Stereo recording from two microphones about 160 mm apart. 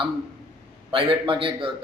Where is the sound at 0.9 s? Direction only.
35° right (ahead or behind).